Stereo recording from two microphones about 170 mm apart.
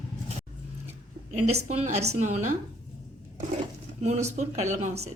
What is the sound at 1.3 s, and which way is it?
A woman's voice, 40° right (ahead or behind).